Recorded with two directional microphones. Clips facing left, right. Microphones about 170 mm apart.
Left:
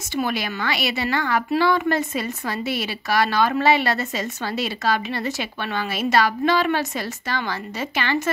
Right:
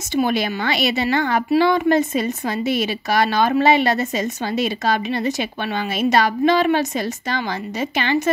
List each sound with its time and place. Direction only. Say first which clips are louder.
0.1 s a woman's voice: right 5 dB; 20° right (ahead or behind)